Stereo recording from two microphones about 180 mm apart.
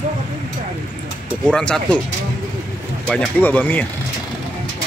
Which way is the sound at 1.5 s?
5° left (ahead or behind).